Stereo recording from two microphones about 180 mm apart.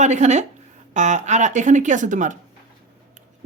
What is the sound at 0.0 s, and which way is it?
Speech, 40° right (ahead or behind).